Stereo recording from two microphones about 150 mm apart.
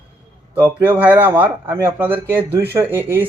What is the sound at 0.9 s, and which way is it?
Speech, 10° right (ahead or behind).